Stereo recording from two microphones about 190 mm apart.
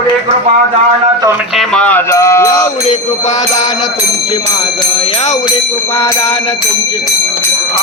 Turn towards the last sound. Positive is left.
turn(degrees=30)  # may be behind; listen again after turning